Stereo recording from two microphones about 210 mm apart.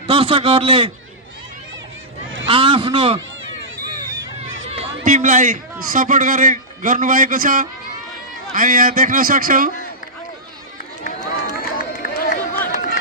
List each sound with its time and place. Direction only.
0.1 s a man's voice: 25° right (ahead or behind)
2.5 s a man's voice: 25° right (ahead or behind)
4.8 s a sound: 35° right (ahead or behind)
5.8 s a man's voice: 40° right (ahead or behind)
11.0 s run: 35° left (ahead or behind)